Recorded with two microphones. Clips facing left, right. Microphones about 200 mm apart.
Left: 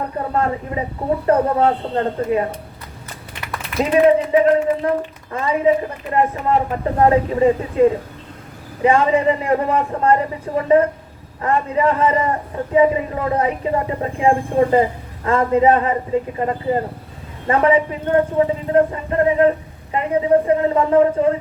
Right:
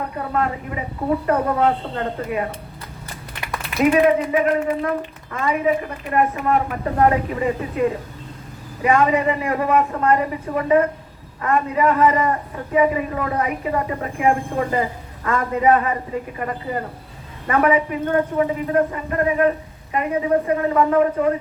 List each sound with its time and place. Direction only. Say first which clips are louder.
1.3 s speech: left 4 dB; 30° left (ahead or behind)
3.9 s a woman's voice: left 7 dB; 30° left (ahead or behind)